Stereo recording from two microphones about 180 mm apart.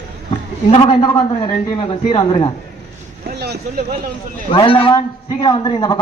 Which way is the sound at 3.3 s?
60° right (ahead or behind).